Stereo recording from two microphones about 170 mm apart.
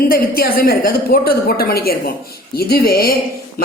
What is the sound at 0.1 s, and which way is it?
Speech, 60° left (ahead or behind).